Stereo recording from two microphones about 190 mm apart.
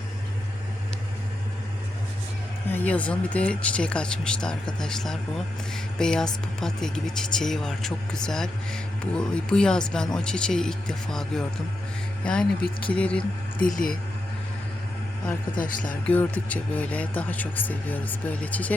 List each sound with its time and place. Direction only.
2.7 s speech: 5° left (ahead or behind)
13.6 s speech: 45° left (ahead or behind)
15.5 s speech: 45° left (ahead or behind)
16.0 s speech: 5° left (ahead or behind)